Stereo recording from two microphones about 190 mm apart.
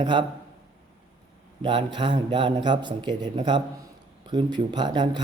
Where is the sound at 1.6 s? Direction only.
25° right (ahead or behind).